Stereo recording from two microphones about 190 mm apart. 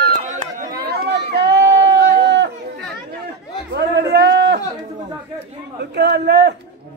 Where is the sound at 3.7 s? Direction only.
65° right (ahead or behind).